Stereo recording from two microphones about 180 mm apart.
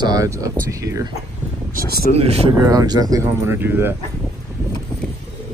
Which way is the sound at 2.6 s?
20° right (ahead or behind).